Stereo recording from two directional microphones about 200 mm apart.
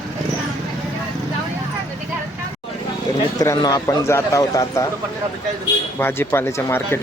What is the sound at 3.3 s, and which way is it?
Speech, 15° left (ahead or behind).